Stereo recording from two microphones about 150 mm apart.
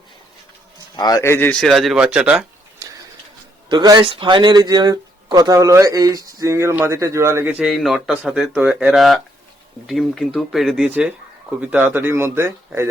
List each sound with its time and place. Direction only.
0.9 s a man's voice: 25° left (ahead or behind)
1.6 s speech: centre (ahead or behind)
3.7 s speech: 30° right (ahead or behind)
7.6 s speech: centre (ahead or behind)